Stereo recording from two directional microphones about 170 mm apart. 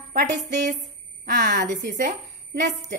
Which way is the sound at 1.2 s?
60° right (ahead or behind).